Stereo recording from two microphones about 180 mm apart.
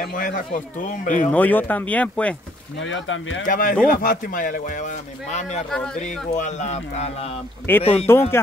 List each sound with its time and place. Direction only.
0.0 s speech: 50° left (ahead or behind)
1.3 s speech: 10° left (ahead or behind)
2.8 s speech: 90° left
3.4 s speech: 50° left (ahead or behind)
5.9 s speech: 40° left (ahead or behind)
8.1 s speech: 15° left (ahead or behind)